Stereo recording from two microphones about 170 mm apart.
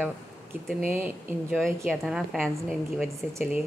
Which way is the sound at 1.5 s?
Centre (ahead or behind).